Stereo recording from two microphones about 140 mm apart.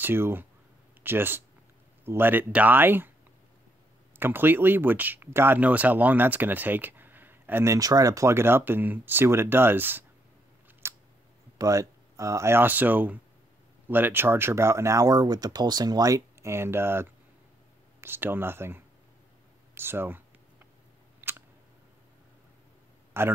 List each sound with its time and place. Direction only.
0.0 s speech: 15° right (ahead or behind)
4.2 s speech: 15° right (ahead or behind)
10.8 s a sound: 20° right (ahead or behind)
11.5 s speech: 25° right (ahead or behind)
19.7 s a sound: 15° right (ahead or behind)
23.2 s speech: 15° right (ahead or behind)